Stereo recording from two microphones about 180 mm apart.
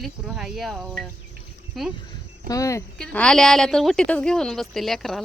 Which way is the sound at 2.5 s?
20° left (ahead or behind).